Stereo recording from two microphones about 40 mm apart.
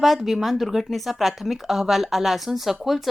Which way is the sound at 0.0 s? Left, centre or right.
Centre.